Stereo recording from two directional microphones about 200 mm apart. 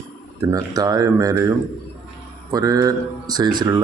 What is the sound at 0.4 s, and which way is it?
Speech, 15° right (ahead or behind).